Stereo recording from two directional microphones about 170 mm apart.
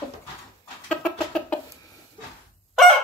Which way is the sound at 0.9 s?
5° left (ahead or behind).